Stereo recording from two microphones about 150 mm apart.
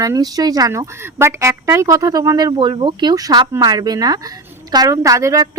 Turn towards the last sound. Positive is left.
turn(degrees=-20)  # may be behind; listen again after turning